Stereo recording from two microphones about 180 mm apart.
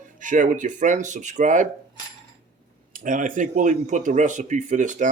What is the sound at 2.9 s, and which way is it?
A man's voice, 45° right (ahead or behind).